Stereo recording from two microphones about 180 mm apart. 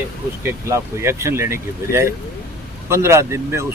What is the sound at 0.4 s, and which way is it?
Speech, 15° right (ahead or behind).